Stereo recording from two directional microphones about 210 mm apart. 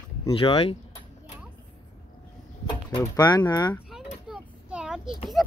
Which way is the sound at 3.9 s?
5° right (ahead or behind).